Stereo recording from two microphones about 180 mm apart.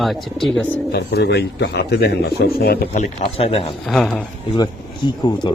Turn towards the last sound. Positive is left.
turn(degrees=25)  # may be behind; listen again after turning